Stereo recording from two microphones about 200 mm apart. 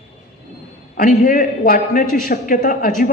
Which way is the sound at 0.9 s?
45° left (ahead or behind).